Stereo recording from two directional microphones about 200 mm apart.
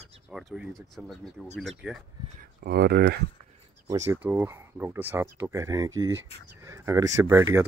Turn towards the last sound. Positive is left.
turn(degrees=-15)  # may be behind; listen again after turning